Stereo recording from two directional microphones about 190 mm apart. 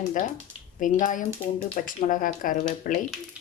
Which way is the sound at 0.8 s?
45° left (ahead or behind).